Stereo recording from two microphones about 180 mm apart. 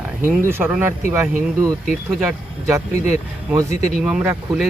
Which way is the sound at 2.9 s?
40° left (ahead or behind).